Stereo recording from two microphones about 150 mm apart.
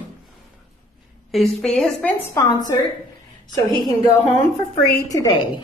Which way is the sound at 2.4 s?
20° left (ahead or behind).